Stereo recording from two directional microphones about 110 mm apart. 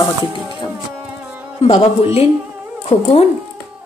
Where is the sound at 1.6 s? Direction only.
65° left (ahead or behind).